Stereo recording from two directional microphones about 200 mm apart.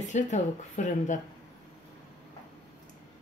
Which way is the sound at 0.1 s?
35° left (ahead or behind).